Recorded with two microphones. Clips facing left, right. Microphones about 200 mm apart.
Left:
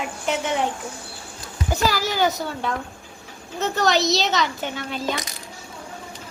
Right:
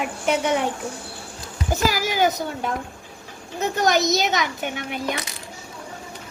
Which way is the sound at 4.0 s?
20° right (ahead or behind).